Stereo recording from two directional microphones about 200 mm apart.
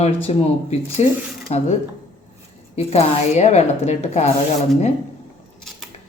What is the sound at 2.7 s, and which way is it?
A woman's voice, 30° left (ahead or behind).